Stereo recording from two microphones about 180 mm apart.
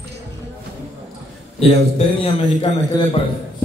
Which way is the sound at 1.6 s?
30° left (ahead or behind).